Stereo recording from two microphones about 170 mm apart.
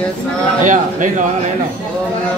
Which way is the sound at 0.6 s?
50° right (ahead or behind).